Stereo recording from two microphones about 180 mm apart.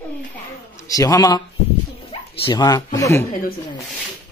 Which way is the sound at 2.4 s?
20° left (ahead or behind).